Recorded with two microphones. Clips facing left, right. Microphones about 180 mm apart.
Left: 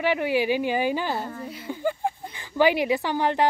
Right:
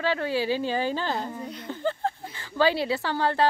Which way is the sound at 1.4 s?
5° left (ahead or behind).